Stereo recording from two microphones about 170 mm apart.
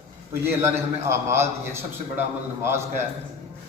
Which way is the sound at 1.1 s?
15° right (ahead or behind).